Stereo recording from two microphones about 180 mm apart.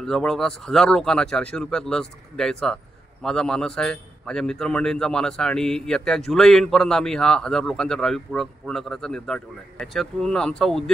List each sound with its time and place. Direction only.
0.0 s speech: 5° left (ahead or behind)